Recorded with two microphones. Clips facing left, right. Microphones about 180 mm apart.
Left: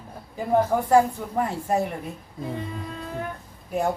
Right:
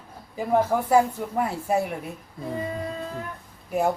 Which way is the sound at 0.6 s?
5° right (ahead or behind).